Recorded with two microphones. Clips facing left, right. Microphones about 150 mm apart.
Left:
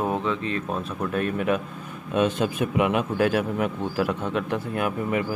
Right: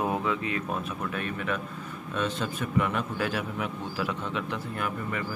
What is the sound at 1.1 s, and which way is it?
A man's voice, 60° left (ahead or behind).